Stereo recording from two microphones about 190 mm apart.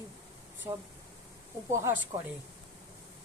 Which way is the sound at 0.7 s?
15° right (ahead or behind).